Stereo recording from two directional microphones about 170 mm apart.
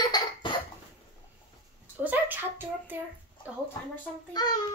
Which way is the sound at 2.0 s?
10° right (ahead or behind).